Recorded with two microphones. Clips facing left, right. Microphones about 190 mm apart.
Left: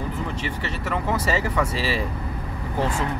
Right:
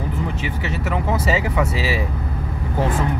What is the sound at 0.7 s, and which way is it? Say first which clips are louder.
Speech: right 3 dB; 10° right (ahead or behind).